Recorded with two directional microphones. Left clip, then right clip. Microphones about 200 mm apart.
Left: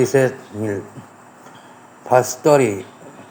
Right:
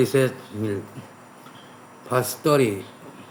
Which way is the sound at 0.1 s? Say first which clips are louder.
Left 5 dB; centre (ahead or behind).